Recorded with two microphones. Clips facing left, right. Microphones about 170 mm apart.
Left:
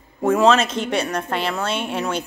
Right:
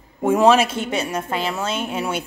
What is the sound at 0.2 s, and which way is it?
A woman's voice, 10° right (ahead or behind).